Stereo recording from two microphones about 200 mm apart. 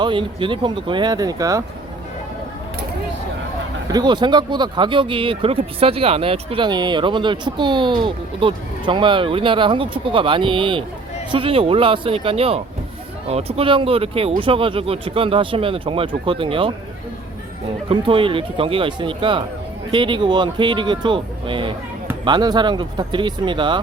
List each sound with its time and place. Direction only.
0.0 s speech: 25° right (ahead or behind)
3.9 s speech: 20° right (ahead or behind)
17.8 s speech: 25° right (ahead or behind)